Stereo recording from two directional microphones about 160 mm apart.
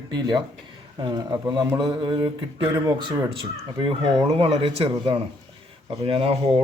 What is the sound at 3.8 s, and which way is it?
Speech, 35° right (ahead or behind).